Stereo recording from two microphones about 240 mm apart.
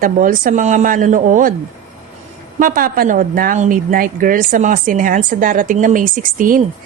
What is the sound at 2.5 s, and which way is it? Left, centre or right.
A woman's voice, right.